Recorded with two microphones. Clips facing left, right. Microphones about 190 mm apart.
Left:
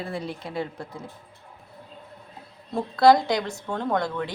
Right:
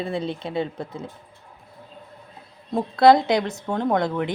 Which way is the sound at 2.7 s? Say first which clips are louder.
Right 2 dB; 20° right (ahead or behind).